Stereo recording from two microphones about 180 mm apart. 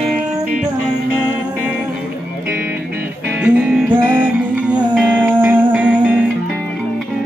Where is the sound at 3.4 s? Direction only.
5° right (ahead or behind).